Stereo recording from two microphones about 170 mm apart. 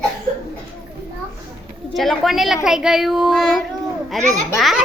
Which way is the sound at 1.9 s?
Centre (ahead or behind).